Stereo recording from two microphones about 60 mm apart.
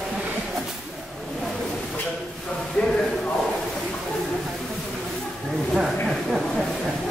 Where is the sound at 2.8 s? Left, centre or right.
Centre.